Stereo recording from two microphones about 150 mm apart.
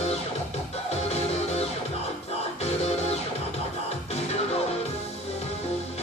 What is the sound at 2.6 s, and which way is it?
Music, 45° left (ahead or behind).